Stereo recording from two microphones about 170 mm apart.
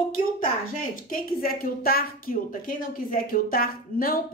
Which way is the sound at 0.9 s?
55° left (ahead or behind).